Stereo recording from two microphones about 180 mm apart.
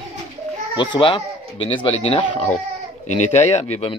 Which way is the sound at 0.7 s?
25° left (ahead or behind).